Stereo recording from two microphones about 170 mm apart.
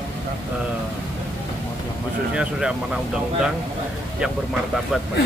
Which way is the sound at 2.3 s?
5° right (ahead or behind).